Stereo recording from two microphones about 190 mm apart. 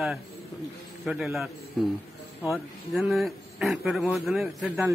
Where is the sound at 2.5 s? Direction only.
Centre (ahead or behind).